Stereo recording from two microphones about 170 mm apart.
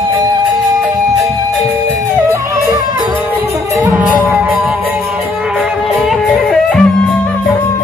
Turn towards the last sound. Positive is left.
turn(degrees=5)  # may be behind; listen again after turning